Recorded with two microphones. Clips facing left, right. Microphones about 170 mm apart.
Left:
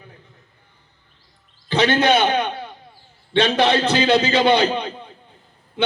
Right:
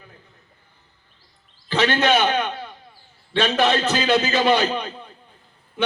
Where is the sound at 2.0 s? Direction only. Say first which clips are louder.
Left 2 dB; 25° left (ahead or behind).